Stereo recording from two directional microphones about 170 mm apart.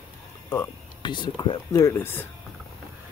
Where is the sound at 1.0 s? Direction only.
25° left (ahead or behind); by 2.2 s 10° left (ahead or behind).